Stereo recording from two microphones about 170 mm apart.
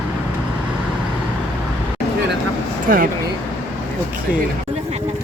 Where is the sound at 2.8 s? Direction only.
55° right (ahead or behind).